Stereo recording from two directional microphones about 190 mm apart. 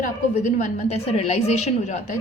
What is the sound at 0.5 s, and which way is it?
A woman's voice, 35° left (ahead or behind).